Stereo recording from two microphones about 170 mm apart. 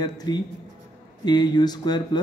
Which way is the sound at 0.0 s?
25° left (ahead or behind).